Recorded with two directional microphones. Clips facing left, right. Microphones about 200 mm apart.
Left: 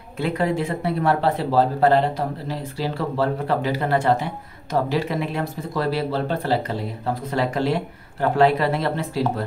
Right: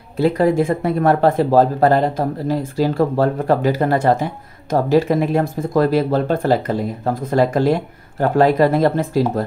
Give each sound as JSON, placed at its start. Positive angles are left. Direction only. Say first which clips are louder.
{"t": 0.2, "sound": "speech", "louder": "right 7 dB", "side_deg": -40}